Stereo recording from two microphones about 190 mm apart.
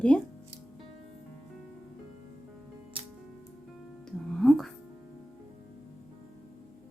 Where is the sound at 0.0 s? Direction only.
5° left (ahead or behind).